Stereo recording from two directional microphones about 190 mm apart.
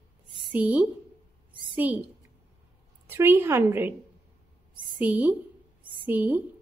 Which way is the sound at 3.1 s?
10° right (ahead or behind).